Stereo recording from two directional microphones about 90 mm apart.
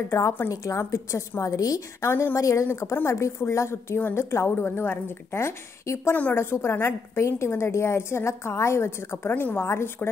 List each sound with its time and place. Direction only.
0.5 s a woman's voice: 35° left (ahead or behind)